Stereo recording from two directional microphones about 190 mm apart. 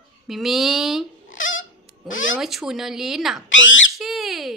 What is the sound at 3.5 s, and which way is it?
Speech, 80° left.